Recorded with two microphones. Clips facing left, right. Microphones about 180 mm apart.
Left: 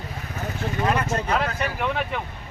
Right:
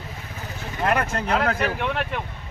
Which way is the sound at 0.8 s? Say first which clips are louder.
Right 1 dB; 65° right (ahead or behind).